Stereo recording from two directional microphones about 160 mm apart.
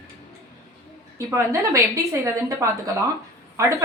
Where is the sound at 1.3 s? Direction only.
20° right (ahead or behind).